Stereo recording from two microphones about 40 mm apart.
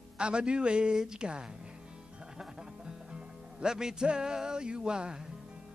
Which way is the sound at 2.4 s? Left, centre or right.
Centre.